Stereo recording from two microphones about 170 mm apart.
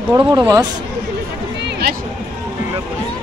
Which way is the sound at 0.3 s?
25° right (ahead or behind).